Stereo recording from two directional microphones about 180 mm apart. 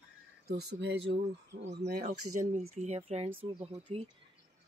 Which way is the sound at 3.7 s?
35° right (ahead or behind).